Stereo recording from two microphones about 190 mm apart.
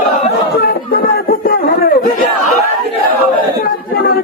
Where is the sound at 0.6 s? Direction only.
55° left (ahead or behind).